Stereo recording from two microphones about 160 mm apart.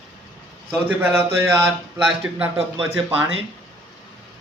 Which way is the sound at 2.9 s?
15° right (ahead or behind).